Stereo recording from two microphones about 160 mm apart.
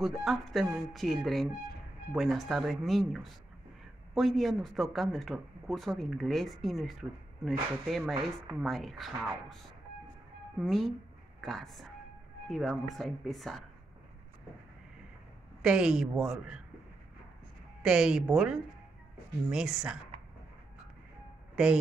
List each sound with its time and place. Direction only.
0.0 s a man's voice: centre (ahead or behind)
10.6 s a man's voice: centre (ahead or behind)
15.6 s a man's voice: 5° right (ahead or behind)
17.8 s a man's voice: 5° right (ahead or behind)